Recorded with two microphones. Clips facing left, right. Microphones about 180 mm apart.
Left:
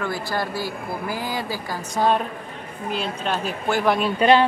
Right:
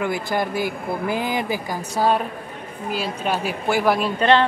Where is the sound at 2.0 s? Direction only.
5° right (ahead or behind).